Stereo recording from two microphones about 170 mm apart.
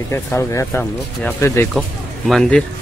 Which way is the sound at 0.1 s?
15° left (ahead or behind).